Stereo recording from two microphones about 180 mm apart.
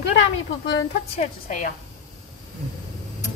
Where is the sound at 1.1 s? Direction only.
45° left (ahead or behind).